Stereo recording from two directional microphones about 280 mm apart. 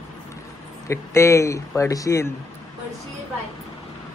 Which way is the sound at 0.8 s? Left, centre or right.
Centre.